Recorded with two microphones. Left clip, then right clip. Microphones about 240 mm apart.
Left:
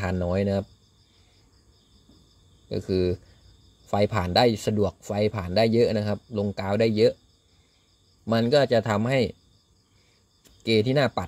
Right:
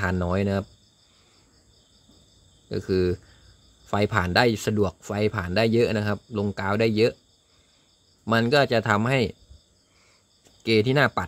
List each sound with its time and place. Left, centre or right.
0.0 s speech: centre
2.7 s speech: centre
8.3 s speech: centre
10.6 s speech: centre